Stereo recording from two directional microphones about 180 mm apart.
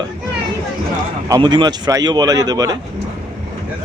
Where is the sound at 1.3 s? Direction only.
25° right (ahead or behind).